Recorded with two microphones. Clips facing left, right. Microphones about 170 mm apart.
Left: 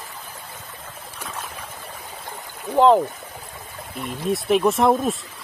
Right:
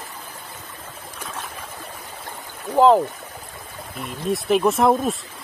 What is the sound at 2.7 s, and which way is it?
Speech, centre (ahead or behind).